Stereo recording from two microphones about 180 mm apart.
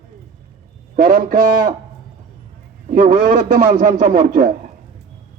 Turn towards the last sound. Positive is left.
turn(degrees=-50)  # may be behind; listen again after turning